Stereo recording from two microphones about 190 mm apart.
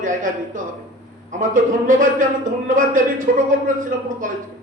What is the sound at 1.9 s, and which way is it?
A man's voice, 45° right (ahead or behind).